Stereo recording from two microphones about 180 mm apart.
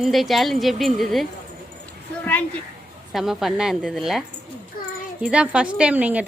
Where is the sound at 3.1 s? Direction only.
Centre (ahead or behind).